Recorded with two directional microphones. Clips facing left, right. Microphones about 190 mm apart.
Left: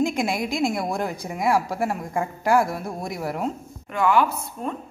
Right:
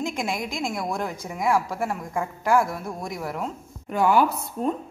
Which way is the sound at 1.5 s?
35° left (ahead or behind).